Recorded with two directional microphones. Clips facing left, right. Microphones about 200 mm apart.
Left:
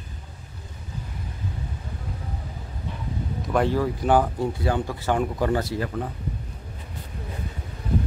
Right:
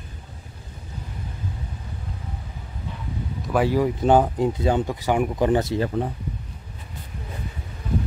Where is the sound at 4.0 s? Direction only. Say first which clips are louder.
Right 3 dB; 25° right (ahead or behind).